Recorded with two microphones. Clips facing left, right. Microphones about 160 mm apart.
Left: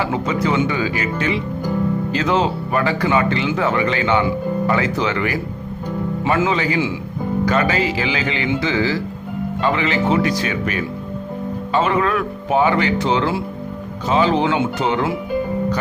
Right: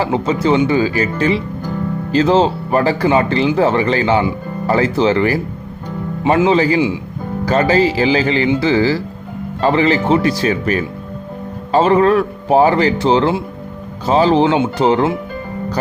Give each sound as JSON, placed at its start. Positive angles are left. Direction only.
{"t": 0.0, "sound": "speech", "side_deg": -30}